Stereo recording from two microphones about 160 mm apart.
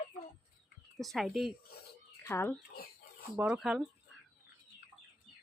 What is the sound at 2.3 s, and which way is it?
Speech, 15° left (ahead or behind).